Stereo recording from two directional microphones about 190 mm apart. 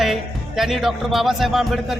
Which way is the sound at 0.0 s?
Centre (ahead or behind).